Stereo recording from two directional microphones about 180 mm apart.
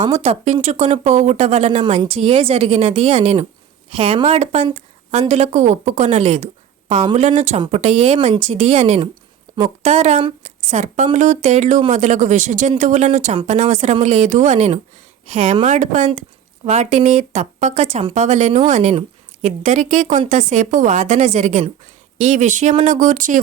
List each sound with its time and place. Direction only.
0.0 s speech: 35° right (ahead or behind)